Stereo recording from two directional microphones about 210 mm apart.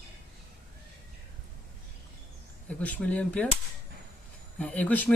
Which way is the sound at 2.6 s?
5° left (ahead or behind).